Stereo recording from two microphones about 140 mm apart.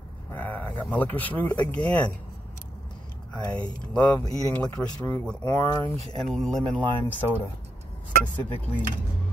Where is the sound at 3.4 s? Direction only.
10° left (ahead or behind).